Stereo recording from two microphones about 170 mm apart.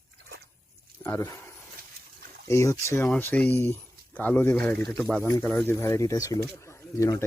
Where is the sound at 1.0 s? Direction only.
15° left (ahead or behind).